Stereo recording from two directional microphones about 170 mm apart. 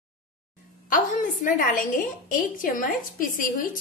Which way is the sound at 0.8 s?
50° left (ahead or behind).